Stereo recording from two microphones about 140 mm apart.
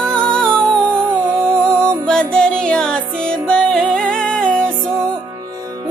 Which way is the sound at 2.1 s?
5° left (ahead or behind).